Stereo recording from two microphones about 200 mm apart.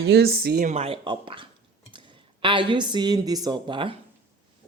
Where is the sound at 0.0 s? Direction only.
55° right (ahead or behind).